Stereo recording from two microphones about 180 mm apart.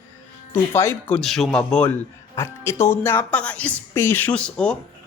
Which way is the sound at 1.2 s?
Centre (ahead or behind).